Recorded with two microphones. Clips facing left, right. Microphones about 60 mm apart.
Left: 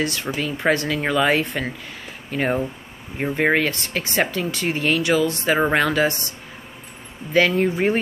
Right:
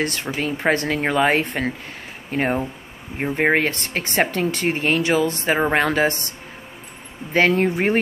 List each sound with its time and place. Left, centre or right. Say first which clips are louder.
0.0 s speech: even; right
7.3 s speech: even; right